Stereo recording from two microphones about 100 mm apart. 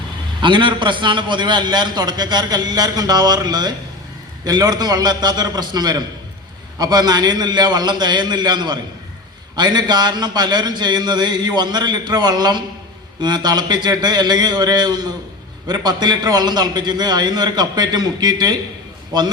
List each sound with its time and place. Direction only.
0.4 s a man's voice: 50° right (ahead or behind)